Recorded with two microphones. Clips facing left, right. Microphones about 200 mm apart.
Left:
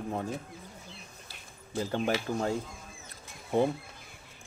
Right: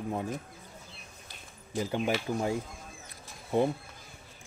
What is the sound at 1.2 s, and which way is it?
Speech, 15° right (ahead or behind).